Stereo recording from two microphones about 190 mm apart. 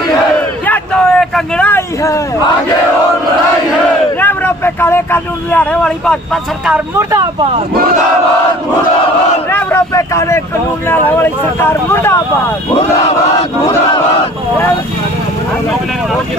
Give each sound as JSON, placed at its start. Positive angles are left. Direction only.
{"t": 0.7, "sound": "a sound", "side_deg": 5}
{"t": 4.2, "sound": "speech", "side_deg": 10}
{"t": 7.0, "sound": "speech", "side_deg": -15}
{"t": 9.5, "sound": "speech", "side_deg": 10}